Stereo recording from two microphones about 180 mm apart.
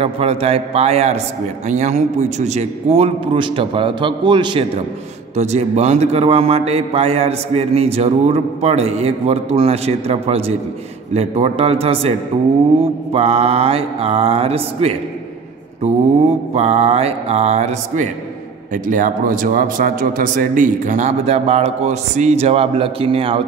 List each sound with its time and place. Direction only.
0.0 s a man's voice: 35° right (ahead or behind)
5.3 s a man's voice: 40° right (ahead or behind)
16.5 s a man's voice: 35° right (ahead or behind)